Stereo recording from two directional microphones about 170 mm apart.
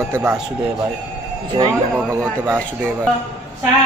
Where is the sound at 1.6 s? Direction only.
30° right (ahead or behind).